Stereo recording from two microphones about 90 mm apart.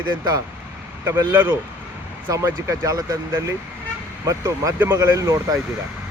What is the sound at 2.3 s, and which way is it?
Speech, 40° right (ahead or behind).